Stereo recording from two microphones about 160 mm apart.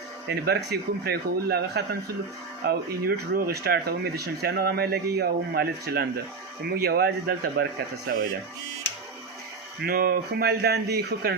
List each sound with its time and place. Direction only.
0.3 s a man's voice: 90° right
2.6 s speech: 70° right (ahead or behind)
6.8 s a man's voice: 90° right
9.8 s speech: 65° right (ahead or behind); by 11.3 s 90° right